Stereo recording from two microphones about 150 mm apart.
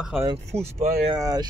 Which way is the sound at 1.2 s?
25° right (ahead or behind).